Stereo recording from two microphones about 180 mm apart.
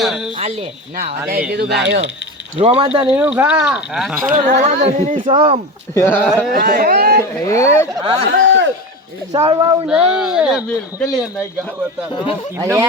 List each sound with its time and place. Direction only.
0.0 s speech: 5° right (ahead or behind)
0.3 s speech: 30° right (ahead or behind)
1.3 s speech: 60° right (ahead or behind)
2.6 s speech: 30° right (ahead or behind)
3.2 s speech: 10° right (ahead or behind)
4.3 s speech: 45° right (ahead or behind)
5.2 s speech: 30° right (ahead or behind)
5.9 s speech: 15° left (ahead or behind)
6.5 s speech: 55° right (ahead or behind)
7.4 s speech: 15° left (ahead or behind)
8.3 s a man's voice: 90° right
9.3 s speech: 20° right (ahead or behind)
9.8 s speech: 5° right (ahead or behind)
12.5 s speech: 15° right (ahead or behind)